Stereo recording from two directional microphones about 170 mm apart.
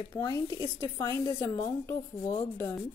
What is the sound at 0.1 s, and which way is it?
A woman's voice, 20° left (ahead or behind).